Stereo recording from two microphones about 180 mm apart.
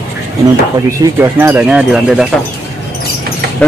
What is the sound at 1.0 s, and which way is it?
Speech, 15° right (ahead or behind).